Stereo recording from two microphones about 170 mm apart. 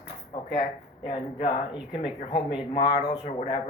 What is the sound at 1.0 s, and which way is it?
Speech, 30° left (ahead or behind).